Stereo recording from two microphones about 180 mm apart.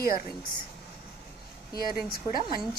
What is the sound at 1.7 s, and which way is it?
Speech, 55° left (ahead or behind).